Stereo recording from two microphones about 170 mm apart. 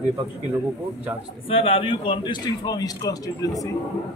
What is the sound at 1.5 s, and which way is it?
A man's voice, 35° left (ahead or behind).